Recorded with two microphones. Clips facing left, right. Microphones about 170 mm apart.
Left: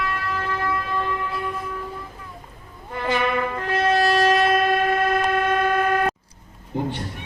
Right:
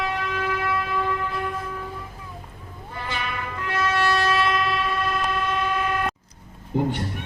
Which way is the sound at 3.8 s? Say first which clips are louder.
Left 4 dB; 35° left (ahead or behind).